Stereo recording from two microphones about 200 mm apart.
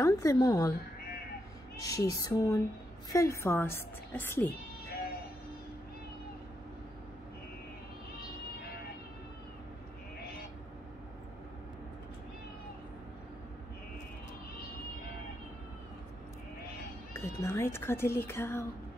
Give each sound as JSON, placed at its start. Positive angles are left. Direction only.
{"t": 0.0, "sound": "a woman's voice", "side_deg": 15}
{"t": 1.8, "sound": "a woman's voice", "side_deg": 15}
{"t": 17.1, "sound": "speech", "side_deg": 15}